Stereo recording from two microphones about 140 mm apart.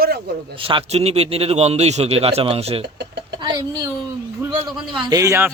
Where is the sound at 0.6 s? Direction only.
40° right (ahead or behind).